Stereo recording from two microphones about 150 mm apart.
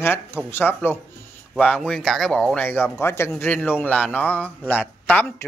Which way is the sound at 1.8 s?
Centre (ahead or behind).